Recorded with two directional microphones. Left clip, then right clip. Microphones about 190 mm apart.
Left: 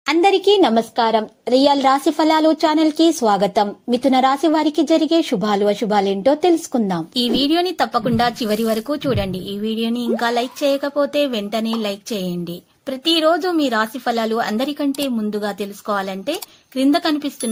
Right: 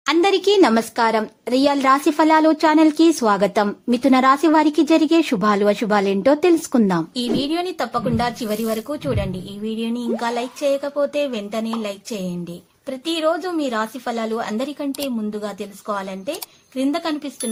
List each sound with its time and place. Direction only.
0.0 s a woman's voice: 5° left (ahead or behind)
7.2 s a woman's voice: 25° left (ahead or behind)